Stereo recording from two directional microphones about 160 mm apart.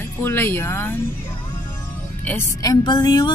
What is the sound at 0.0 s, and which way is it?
Speech, 15° left (ahead or behind).